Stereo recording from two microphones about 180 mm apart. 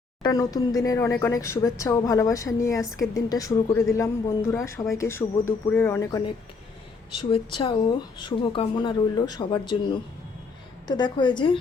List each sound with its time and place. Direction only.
0.2 s speech: 20° left (ahead or behind)